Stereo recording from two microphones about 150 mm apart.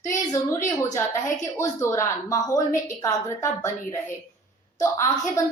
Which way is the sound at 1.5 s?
20° left (ahead or behind).